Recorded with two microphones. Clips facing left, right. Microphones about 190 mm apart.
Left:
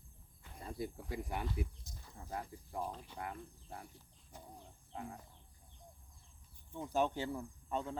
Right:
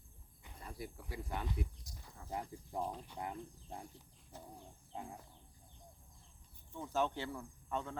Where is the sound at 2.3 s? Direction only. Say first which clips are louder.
Right 1 dB; 15° right (ahead or behind).